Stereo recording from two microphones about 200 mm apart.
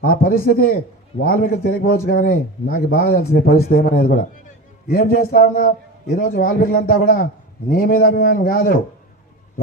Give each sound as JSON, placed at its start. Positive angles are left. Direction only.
{"t": 0.2, "sound": "a man's voice", "side_deg": 45}